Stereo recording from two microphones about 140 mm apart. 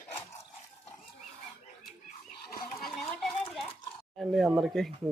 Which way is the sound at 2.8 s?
5° left (ahead or behind).